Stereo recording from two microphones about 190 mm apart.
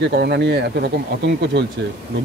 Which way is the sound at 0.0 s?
60° right (ahead or behind).